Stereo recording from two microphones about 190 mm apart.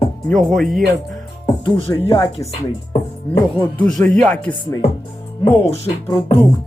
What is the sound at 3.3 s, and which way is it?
Speech, 10° left (ahead or behind).